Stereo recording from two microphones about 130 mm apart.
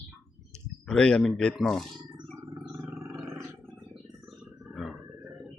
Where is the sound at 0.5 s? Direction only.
5° left (ahead or behind).